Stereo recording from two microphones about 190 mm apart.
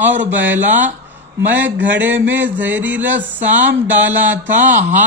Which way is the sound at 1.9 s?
10° right (ahead or behind).